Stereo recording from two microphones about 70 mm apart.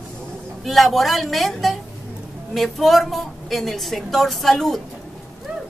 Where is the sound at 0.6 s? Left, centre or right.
Centre.